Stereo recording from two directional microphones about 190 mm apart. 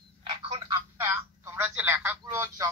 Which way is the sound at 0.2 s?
30° right (ahead or behind).